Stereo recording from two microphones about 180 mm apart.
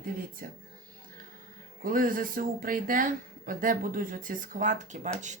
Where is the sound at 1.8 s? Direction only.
50° right (ahead or behind).